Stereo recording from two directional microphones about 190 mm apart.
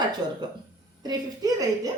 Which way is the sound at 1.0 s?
20° right (ahead or behind).